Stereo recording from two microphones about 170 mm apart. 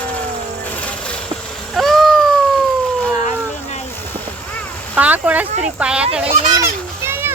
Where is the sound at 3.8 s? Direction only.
10° left (ahead or behind).